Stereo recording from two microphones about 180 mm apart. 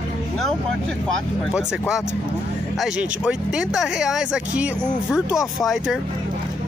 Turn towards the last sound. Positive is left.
turn(degrees=0)  # may be behind; listen again after turning